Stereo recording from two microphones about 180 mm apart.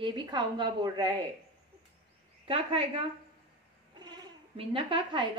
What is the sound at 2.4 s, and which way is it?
Speech, 30° right (ahead or behind).